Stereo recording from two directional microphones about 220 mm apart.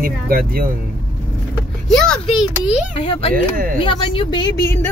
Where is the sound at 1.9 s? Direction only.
Centre (ahead or behind).